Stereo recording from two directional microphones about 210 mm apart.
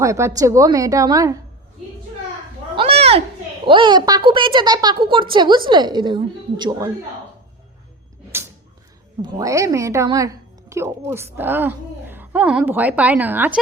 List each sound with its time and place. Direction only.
0.0 s a woman's voice: 15° right (ahead or behind)
2.7 s a sound: 30° right (ahead or behind)
3.7 s a woman's voice: 20° right (ahead or behind)
9.2 s a woman's voice: 15° right (ahead or behind)